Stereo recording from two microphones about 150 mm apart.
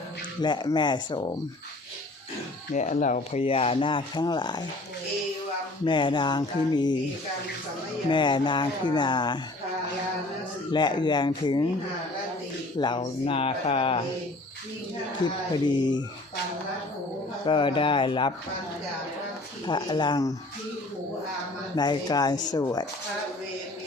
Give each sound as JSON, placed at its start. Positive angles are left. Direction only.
{"t": 0.4, "sound": "speech", "side_deg": 30}
{"t": 2.7, "sound": "speech", "side_deg": 55}
{"t": 3.4, "sound": "speech", "side_deg": 40}
{"t": 5.8, "sound": "speech", "side_deg": 30}
{"t": 8.1, "sound": "speech", "side_deg": 30}
{"t": 10.7, "sound": "speech", "side_deg": 30}
{"t": 12.8, "sound": "speech", "side_deg": 30}
{"t": 13.2, "sound": "speech", "side_deg": 40}
{"t": 15.2, "sound": "speech", "side_deg": 30}
{"t": 17.4, "sound": "speech", "side_deg": 35}
{"t": 19.6, "sound": "speech", "side_deg": 30}
{"t": 21.8, "sound": "speech", "side_deg": 25}